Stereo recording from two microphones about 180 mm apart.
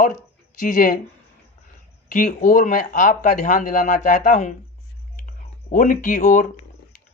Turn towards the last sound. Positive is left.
turn(degrees=45)  # may be behind; listen again after turning